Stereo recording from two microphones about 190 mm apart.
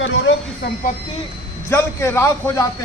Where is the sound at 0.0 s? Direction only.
75° left (ahead or behind).